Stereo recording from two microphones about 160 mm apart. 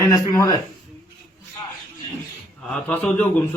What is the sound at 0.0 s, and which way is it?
Speech, 20° left (ahead or behind).